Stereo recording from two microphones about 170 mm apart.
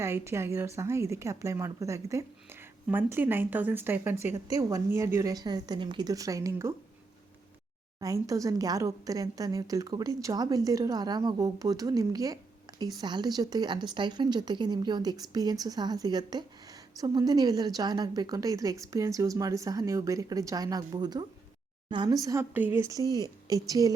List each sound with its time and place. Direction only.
0.0 s a woman's voice: 15° right (ahead or behind)
7.9 s speech: 20° right (ahead or behind)